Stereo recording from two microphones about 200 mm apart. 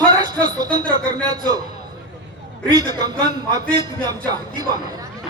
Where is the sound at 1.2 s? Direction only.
20° right (ahead or behind).